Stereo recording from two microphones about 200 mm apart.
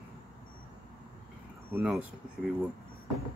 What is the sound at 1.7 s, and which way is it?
Speech, 5° right (ahead or behind).